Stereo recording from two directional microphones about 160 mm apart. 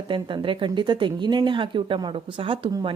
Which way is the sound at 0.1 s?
30° right (ahead or behind).